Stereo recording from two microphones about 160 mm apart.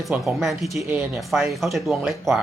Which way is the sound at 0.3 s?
Centre (ahead or behind).